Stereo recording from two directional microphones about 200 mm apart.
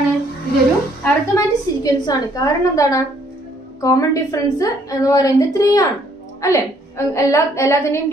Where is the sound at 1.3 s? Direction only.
20° left (ahead or behind).